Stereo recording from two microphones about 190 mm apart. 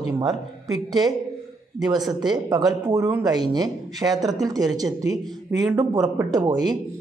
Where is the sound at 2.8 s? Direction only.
15° right (ahead or behind).